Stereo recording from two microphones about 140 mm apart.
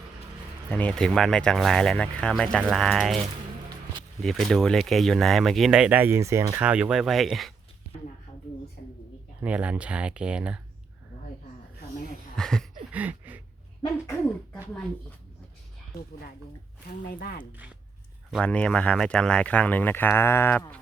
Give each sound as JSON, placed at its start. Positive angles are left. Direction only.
{"t": 0.7, "sound": "speech", "side_deg": 10}
{"t": 4.2, "sound": "speech", "side_deg": 0}
{"t": 6.6, "sound": "speech", "side_deg": -10}
{"t": 9.4, "sound": "speech", "side_deg": -10}
{"t": 12.4, "sound": "speech", "side_deg": 5}
{"t": 12.9, "sound": "a sound", "side_deg": -10}
{"t": 17.2, "sound": "speech", "side_deg": 90}
{"t": 18.3, "sound": "speech", "side_deg": 5}